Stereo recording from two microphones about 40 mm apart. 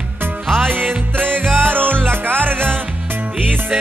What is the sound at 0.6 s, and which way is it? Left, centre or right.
Music, right.